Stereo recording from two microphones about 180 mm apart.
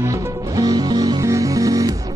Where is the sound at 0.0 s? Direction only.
20° right (ahead or behind).